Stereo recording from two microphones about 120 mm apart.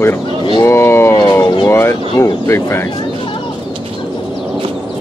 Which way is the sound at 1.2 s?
30° left (ahead or behind).